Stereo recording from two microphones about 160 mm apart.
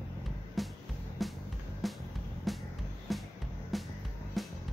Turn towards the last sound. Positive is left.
turn(degrees=0)  # may be behind; listen again after turning